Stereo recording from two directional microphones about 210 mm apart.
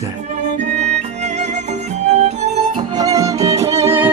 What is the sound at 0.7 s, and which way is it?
Music, 35° right (ahead or behind).